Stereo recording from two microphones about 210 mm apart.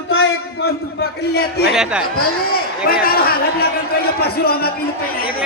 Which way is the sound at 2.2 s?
45° left (ahead or behind).